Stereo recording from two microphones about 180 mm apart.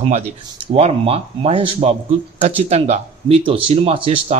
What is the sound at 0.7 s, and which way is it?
Speech, 35° right (ahead or behind).